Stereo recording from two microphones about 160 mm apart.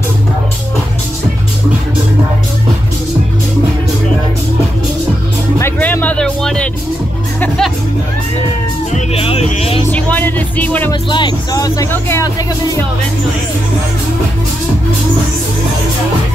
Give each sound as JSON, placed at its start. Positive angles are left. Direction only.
{"t": 5.6, "sound": "music", "side_deg": 10}
{"t": 8.9, "sound": "music", "side_deg": 40}
{"t": 9.9, "sound": "music", "side_deg": 10}
{"t": 10.9, "sound": "speech", "side_deg": 30}